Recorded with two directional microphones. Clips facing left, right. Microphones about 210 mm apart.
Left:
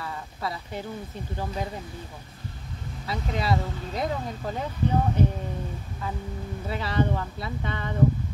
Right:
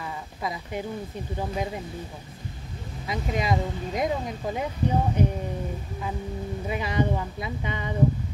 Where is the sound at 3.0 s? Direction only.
15° right (ahead or behind).